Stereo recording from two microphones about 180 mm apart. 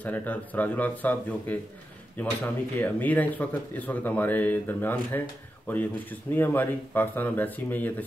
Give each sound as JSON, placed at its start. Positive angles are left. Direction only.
{"t": 0.0, "sound": "speech", "side_deg": 10}